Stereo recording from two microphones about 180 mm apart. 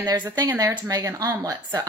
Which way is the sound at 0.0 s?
25° right (ahead or behind).